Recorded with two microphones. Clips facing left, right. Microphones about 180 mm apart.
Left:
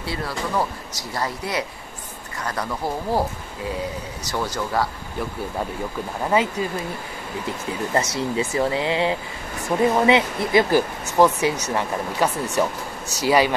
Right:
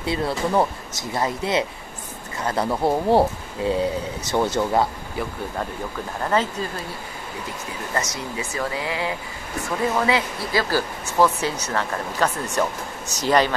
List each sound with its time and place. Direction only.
0.0 s speech: 25° right (ahead or behind)
6.2 s speech: 10° left (ahead or behind)
7.9 s speech: 30° left (ahead or behind); by 13.6 s 10° left (ahead or behind)